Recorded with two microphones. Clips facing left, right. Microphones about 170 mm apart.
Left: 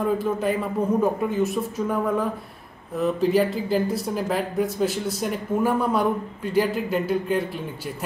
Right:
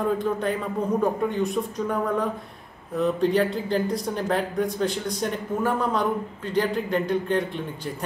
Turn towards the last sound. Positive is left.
turn(degrees=5)  # may be behind; listen again after turning